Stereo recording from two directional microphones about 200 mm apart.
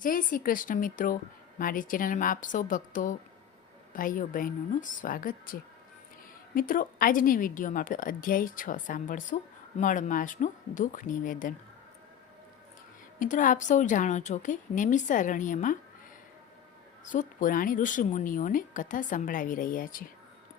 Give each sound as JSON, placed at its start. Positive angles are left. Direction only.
{"t": 0.0, "sound": "a woman's voice", "side_deg": 45}
{"t": 13.1, "sound": "a woman's voice", "side_deg": 40}
{"t": 17.1, "sound": "a woman's voice", "side_deg": 40}